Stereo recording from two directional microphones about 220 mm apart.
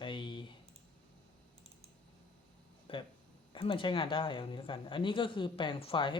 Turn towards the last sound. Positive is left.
turn(degrees=20)  # may be behind; listen again after turning